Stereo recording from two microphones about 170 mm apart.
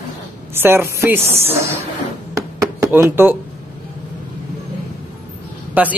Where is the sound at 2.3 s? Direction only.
20° right (ahead or behind).